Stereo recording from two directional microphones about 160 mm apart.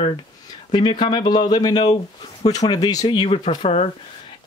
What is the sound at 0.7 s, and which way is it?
Speech, 30° left (ahead or behind).